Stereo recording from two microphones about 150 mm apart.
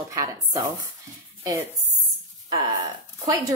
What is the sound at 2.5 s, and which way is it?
Speech, 25° right (ahead or behind).